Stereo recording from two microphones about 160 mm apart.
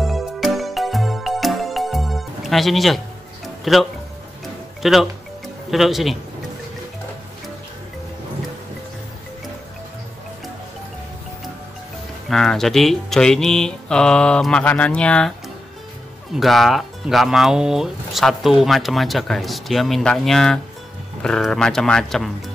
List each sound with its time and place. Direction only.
0.0 s music: centre (ahead or behind)
4.8 s speech: centre (ahead or behind)
12.3 s speech: centre (ahead or behind)
16.3 s speech: centre (ahead or behind)